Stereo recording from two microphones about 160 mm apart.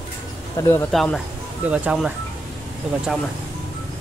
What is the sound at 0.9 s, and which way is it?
Speech, centre (ahead or behind).